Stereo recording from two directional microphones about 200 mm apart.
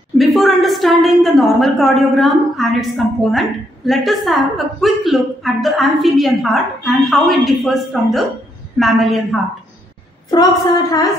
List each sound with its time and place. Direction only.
0.2 s a woman's voice: centre (ahead or behind)